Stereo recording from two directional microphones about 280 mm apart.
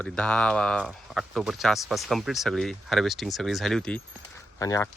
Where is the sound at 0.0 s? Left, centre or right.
Centre.